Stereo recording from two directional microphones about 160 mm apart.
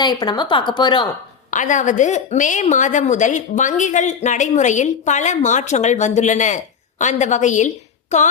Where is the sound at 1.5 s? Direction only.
50° left (ahead or behind).